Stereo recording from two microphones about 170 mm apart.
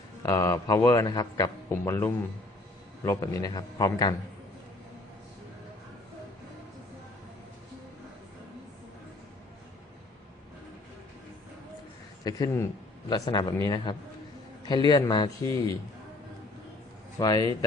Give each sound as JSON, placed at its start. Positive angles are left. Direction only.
{"t": 0.2, "sound": "a man's voice", "side_deg": 15}
{"t": 12.2, "sound": "a man's voice", "side_deg": 20}
{"t": 17.2, "sound": "a man's voice", "side_deg": 20}